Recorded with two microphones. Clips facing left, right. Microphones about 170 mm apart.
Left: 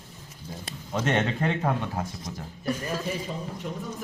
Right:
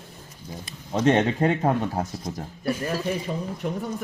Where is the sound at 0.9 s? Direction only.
30° right (ahead or behind).